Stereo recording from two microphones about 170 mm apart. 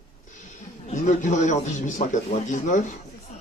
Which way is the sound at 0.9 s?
45° left (ahead or behind).